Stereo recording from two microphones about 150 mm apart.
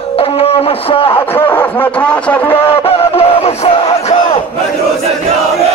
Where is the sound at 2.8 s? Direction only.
40° left (ahead or behind).